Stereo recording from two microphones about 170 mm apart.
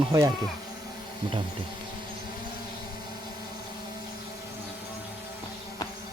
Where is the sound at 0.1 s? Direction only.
20° right (ahead or behind).